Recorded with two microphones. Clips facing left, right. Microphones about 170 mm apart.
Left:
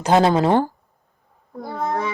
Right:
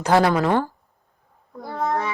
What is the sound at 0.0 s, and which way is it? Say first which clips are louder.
Speech: left 2 dB; 20° left (ahead or behind).